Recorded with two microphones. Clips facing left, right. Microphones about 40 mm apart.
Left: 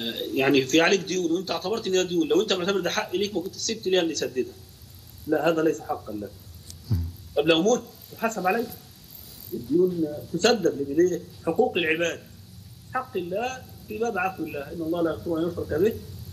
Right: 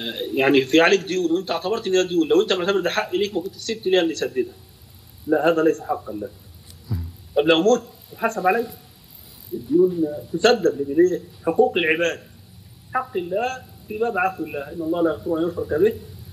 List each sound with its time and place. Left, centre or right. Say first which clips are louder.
0.0 s a man's voice: right 4 dB; centre
6.9 s a sound: right 1 dB; centre
8.1 s a man's voice: right 5 dB; centre
10.8 s a man's voice: right 4 dB; centre
12.0 s a man's voice: right 4 dB; centre
12.9 s a man's voice: right 4 dB; centre
13.4 s a man's voice: right 5 dB; centre
13.8 s a man's voice: right 5 dB; centre